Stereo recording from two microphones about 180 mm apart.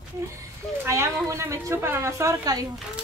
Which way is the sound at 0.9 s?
15° right (ahead or behind).